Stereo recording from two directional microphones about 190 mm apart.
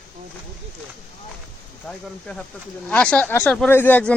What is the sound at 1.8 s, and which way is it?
Speech, 5° left (ahead or behind).